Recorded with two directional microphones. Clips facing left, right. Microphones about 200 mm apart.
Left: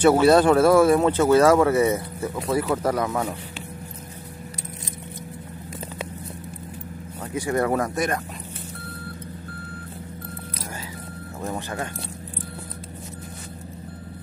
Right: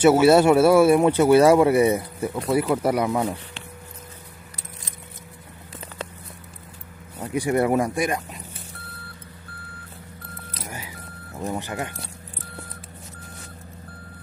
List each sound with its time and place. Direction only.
0.0 s speech: 10° right (ahead or behind)
2.4 s speech: centre (ahead or behind)
7.2 s speech: 15° right (ahead or behind)
11.4 s speech: 15° right (ahead or behind)